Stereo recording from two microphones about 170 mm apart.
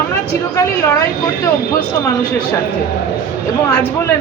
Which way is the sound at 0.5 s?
15° left (ahead or behind).